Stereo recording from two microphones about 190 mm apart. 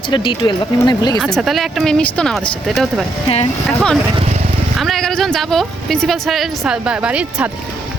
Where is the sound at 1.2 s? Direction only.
Centre (ahead or behind).